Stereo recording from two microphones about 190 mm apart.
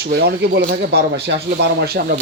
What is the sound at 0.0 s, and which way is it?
Speech, 55° right (ahead or behind).